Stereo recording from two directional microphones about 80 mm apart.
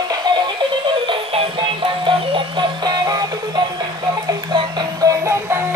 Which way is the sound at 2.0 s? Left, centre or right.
Right.